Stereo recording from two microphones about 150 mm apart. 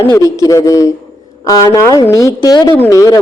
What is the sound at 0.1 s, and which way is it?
A woman's voice, 20° left (ahead or behind).